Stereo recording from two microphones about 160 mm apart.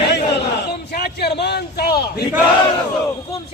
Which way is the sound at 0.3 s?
90° left.